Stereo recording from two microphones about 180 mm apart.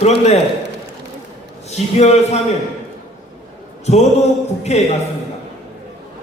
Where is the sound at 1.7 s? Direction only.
40° left (ahead or behind).